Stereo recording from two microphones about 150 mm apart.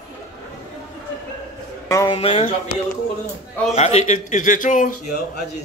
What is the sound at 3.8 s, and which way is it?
A man's voice, 50° left (ahead or behind).